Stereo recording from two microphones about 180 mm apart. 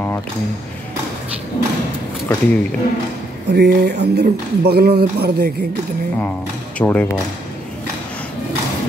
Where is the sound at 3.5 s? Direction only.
70° right (ahead or behind).